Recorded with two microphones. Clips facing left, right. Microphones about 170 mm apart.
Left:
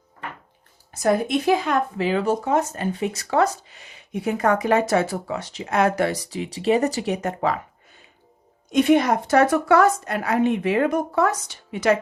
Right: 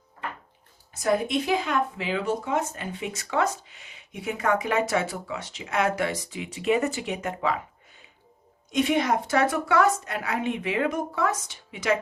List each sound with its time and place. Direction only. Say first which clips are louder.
0.9 s speech: left 4 dB; 50° left (ahead or behind)
8.7 s a woman's voice: left 6 dB; 55° left (ahead or behind)